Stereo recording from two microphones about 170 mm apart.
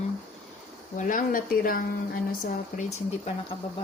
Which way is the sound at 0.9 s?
50° left (ahead or behind).